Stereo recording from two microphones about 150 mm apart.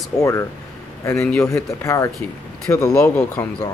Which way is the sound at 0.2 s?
20° left (ahead or behind).